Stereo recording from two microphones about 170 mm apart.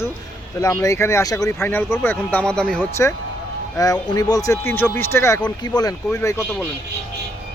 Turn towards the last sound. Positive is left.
turn(degrees=15)  # may be behind; listen again after turning